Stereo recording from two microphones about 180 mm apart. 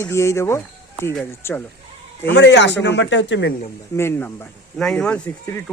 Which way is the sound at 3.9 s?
15° left (ahead or behind).